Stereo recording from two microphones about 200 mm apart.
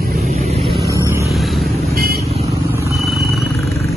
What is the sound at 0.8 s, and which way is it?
Vehicle, 15° right (ahead or behind).